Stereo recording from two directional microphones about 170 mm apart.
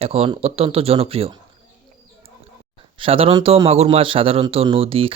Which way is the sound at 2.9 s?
30° right (ahead or behind).